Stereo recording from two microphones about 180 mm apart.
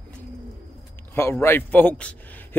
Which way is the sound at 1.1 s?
15° left (ahead or behind).